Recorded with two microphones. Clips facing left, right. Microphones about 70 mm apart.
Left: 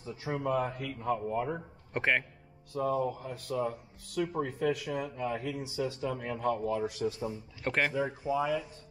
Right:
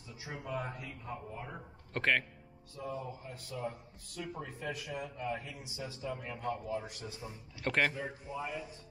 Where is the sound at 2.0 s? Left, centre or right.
Centre.